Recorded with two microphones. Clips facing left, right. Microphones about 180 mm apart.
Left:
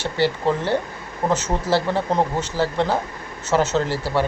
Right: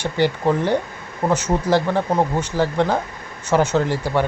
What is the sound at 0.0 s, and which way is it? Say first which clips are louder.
Speech: right 1 dB; 15° right (ahead or behind).